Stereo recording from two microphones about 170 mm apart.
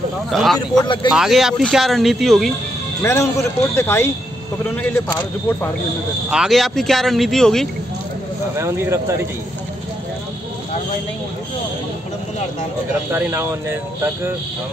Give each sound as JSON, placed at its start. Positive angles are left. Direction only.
{"t": 0.3, "sound": "speech", "side_deg": 0}
{"t": 3.0, "sound": "speech", "side_deg": 15}
{"t": 6.3, "sound": "speech", "side_deg": 0}
{"t": 8.5, "sound": "speech", "side_deg": -15}
{"t": 13.1, "sound": "speech", "side_deg": -15}